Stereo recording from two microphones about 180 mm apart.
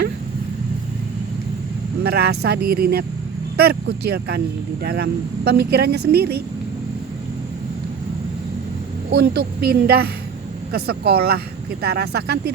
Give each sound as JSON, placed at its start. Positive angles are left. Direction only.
{"t": 2.0, "sound": "speech", "side_deg": -60}
{"t": 9.1, "sound": "speech", "side_deg": -65}